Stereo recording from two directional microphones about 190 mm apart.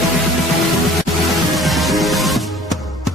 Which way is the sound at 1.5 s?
Centre (ahead or behind).